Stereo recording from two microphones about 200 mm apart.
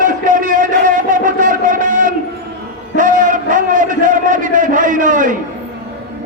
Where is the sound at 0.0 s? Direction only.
40° right (ahead or behind).